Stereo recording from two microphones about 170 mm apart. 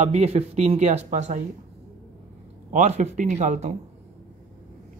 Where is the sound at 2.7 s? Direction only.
45° right (ahead or behind).